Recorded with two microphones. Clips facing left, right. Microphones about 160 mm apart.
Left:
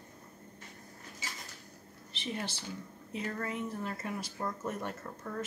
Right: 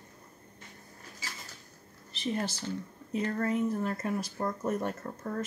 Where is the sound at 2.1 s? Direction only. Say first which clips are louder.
Right 6 dB; 40° right (ahead or behind).